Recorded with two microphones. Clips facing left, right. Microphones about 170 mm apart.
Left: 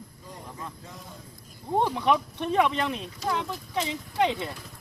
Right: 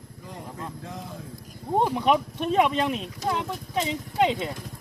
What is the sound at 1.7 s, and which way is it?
Speech, 15° right (ahead or behind).